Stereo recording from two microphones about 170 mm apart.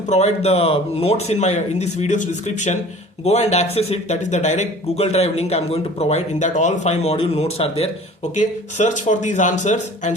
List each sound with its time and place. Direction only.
0.1 s a man's voice: 40° left (ahead or behind)
8.4 s speech: 45° left (ahead or behind)